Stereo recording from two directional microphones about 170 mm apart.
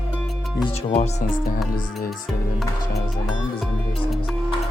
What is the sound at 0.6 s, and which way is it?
Speech, 40° left (ahead or behind).